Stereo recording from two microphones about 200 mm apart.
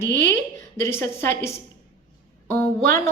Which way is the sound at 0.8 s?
15° left (ahead or behind).